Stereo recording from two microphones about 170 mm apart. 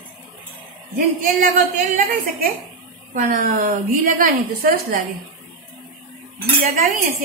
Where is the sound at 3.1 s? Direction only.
50° right (ahead or behind).